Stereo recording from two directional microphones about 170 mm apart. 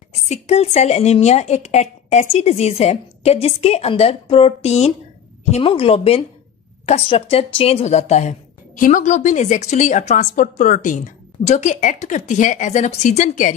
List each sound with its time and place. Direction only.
0.3 s a woman's voice: 40° left (ahead or behind)